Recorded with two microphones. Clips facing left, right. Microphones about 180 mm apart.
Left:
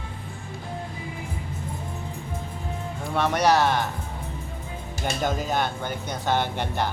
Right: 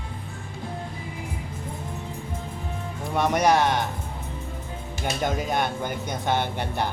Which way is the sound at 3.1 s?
15° right (ahead or behind).